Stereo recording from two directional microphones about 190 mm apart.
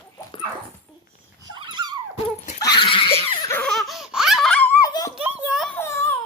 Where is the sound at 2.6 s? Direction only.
25° left (ahead or behind).